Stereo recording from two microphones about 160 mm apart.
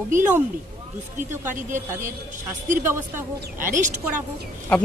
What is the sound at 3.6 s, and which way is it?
Speech, 50° right (ahead or behind).